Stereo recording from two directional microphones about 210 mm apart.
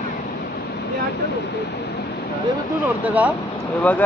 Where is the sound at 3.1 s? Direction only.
5° right (ahead or behind).